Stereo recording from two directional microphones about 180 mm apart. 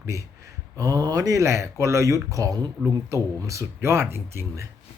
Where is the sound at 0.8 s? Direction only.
20° right (ahead or behind).